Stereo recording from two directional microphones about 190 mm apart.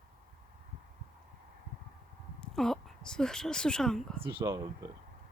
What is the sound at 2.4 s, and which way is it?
Speech, centre (ahead or behind).